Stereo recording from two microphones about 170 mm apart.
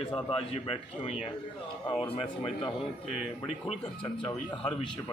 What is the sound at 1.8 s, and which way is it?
Speech, 30° left (ahead or behind).